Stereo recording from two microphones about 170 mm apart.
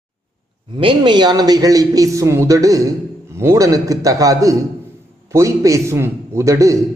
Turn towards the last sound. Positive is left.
turn(degrees=-20)  # may be behind; listen again after turning